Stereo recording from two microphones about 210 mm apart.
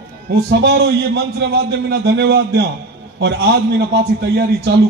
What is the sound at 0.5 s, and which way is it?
A man's voice, 50° right (ahead or behind).